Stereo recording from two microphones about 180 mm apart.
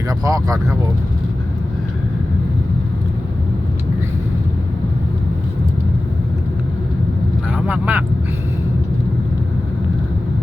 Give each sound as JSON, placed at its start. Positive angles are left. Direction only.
{"t": 0.3, "sound": "speech", "side_deg": -20}
{"t": 7.5, "sound": "speech", "side_deg": -10}